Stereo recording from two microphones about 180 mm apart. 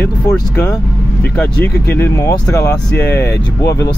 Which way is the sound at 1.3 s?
10° left (ahead or behind).